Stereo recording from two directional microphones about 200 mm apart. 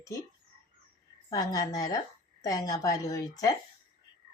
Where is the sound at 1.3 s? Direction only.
15° left (ahead or behind).